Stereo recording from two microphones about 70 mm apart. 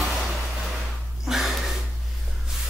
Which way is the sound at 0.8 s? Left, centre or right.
Centre.